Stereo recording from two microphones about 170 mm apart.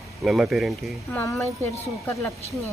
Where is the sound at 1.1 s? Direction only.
10° left (ahead or behind).